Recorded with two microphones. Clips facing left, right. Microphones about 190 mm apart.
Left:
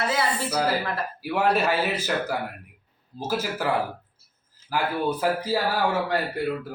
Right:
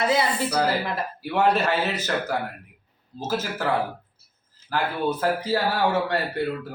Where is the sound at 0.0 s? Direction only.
15° right (ahead or behind).